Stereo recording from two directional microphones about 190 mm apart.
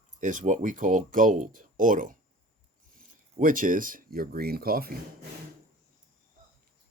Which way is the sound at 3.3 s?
45° right (ahead or behind).